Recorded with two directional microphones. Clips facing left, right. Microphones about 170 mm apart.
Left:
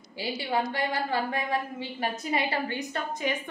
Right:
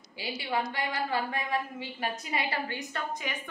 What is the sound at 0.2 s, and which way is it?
A woman's voice, 30° left (ahead or behind).